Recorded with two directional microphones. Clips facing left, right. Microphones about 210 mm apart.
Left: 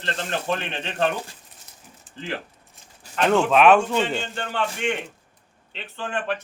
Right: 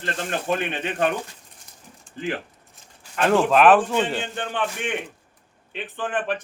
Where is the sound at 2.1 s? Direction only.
5° left (ahead or behind).